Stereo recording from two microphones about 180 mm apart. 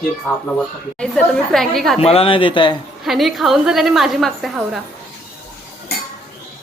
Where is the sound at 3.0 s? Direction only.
Centre (ahead or behind).